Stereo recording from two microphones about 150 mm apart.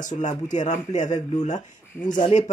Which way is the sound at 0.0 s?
55° left (ahead or behind).